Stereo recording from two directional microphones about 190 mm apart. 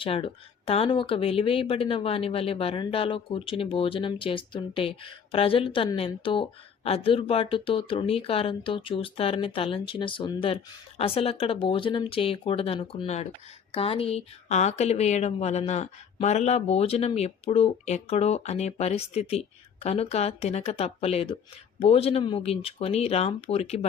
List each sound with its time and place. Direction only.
0.0 s a woman's voice: 30° left (ahead or behind)